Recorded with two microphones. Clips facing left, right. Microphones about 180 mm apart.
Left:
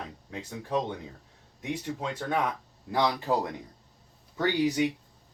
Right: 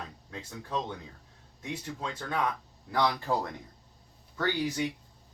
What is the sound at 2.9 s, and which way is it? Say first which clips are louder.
Speech: left 2 dB; 20° left (ahead or behind).